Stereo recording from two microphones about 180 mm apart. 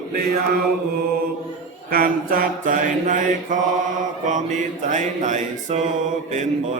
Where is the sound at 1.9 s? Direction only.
55° right (ahead or behind).